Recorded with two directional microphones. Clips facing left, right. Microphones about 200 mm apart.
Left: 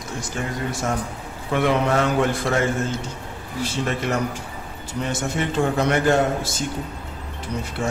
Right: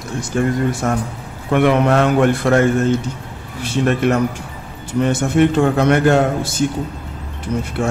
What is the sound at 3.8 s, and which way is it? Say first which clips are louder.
A man's voice: right 10 dB; 60° right (ahead or behind).